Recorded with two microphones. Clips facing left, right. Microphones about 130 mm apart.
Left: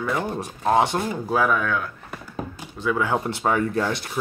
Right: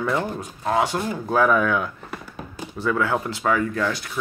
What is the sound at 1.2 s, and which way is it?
Speech, 5° left (ahead or behind).